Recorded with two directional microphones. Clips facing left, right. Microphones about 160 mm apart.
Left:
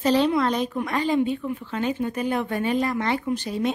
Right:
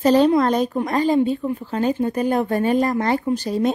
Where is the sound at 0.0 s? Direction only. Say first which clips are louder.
Right 5 dB; 45° right (ahead or behind).